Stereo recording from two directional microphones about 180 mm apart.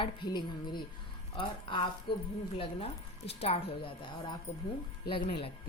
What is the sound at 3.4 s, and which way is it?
A woman's voice, 30° left (ahead or behind).